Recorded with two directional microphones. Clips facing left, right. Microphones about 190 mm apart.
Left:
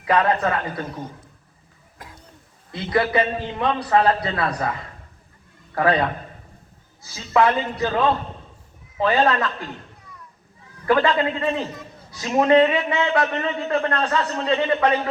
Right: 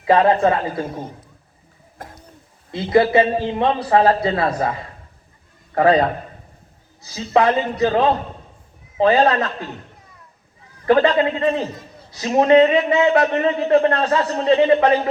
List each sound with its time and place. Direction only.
0.0 s a man's voice: 25° right (ahead or behind)
2.7 s a man's voice: 25° right (ahead or behind)
5.9 s a man's voice: 40° right (ahead or behind)
10.8 s a man's voice: 40° right (ahead or behind)